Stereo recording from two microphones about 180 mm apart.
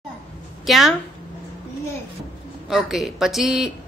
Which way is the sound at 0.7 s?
Centre (ahead or behind).